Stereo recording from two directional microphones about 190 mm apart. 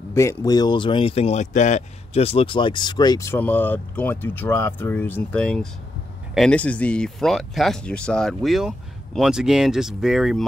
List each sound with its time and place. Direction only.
0.1 s speech: 15° left (ahead or behind); by 10.4 s centre (ahead or behind)